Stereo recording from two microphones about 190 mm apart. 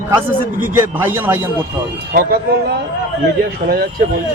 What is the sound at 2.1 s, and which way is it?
Speech, 55° right (ahead or behind).